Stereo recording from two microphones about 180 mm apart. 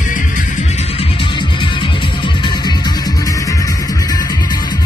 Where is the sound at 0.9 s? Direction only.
30° left (ahead or behind).